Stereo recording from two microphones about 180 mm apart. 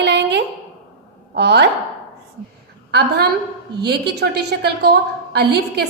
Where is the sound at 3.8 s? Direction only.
65° right (ahead or behind).